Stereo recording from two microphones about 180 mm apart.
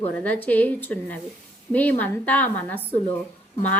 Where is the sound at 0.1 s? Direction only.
10° left (ahead or behind).